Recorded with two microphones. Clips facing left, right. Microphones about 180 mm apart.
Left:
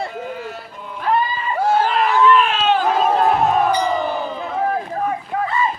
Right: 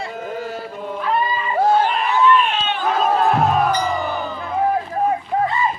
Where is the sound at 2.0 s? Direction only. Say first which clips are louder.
Left 2 dB; 90° left.